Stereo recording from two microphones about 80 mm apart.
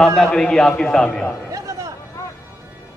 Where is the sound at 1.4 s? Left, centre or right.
Right.